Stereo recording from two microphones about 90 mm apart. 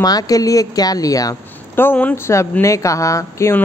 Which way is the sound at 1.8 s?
20° left (ahead or behind).